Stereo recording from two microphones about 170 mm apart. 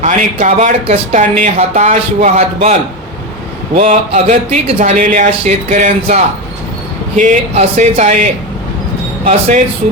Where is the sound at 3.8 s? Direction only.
40° right (ahead or behind).